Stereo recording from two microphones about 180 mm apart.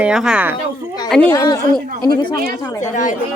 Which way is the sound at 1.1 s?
10° left (ahead or behind).